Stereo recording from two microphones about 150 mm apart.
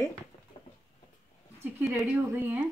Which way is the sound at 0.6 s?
30° left (ahead or behind).